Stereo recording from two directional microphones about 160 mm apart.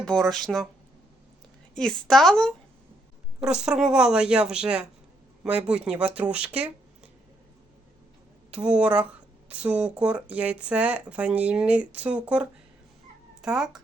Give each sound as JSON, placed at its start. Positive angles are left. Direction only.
{"t": 0.0, "sound": "speech", "side_deg": 5}
{"t": 1.7, "sound": "speech", "side_deg": 5}
{"t": 8.4, "sound": "speech", "side_deg": -5}